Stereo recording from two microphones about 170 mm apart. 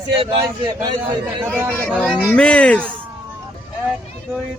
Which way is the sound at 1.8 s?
5° left (ahead or behind).